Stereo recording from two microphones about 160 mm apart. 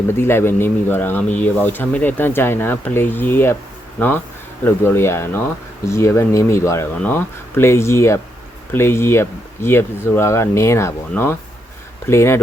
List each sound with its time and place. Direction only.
0.1 s speech: 15° left (ahead or behind)
4.6 s speech: 15° left (ahead or behind)